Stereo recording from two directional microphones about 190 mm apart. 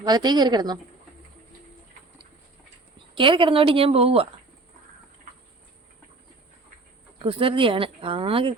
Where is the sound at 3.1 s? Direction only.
25° right (ahead or behind).